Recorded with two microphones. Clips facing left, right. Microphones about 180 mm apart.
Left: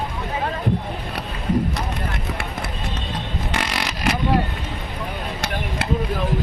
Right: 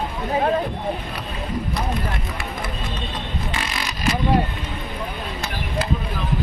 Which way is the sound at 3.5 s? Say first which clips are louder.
Left 3 dB; 70° left (ahead or behind).